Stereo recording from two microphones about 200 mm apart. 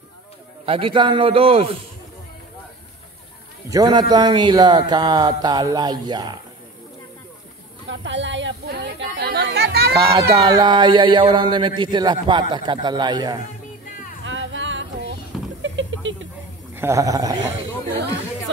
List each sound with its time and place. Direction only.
0.7 s speech: 25° right (ahead or behind)
3.7 s speech: 20° right (ahead or behind)
7.9 s a sound: 65° right (ahead or behind)
10.3 s speech: 20° right (ahead or behind)
14.2 s a sound: 70° right (ahead or behind)
16.7 s a man's voice: 15° right (ahead or behind)